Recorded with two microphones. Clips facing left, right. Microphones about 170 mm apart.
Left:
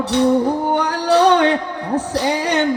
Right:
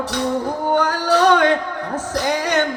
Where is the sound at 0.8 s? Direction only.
15° left (ahead or behind).